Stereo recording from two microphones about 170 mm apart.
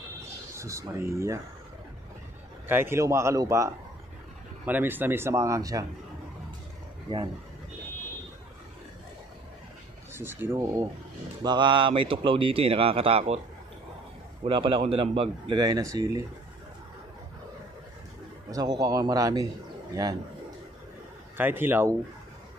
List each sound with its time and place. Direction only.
0.6 s speech: 15° right (ahead or behind)
2.7 s speech: 15° right (ahead or behind)
10.1 s speech: 15° right (ahead or behind)
11.4 s speech: 25° right (ahead or behind)
14.4 s speech: 30° right (ahead or behind)
15.6 s a man's voice: 20° right (ahead or behind)
18.5 s a man's voice: 20° right (ahead or behind)
21.4 s speech: 10° right (ahead or behind)